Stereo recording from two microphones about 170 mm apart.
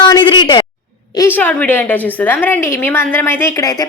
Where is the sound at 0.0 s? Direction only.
25° left (ahead or behind).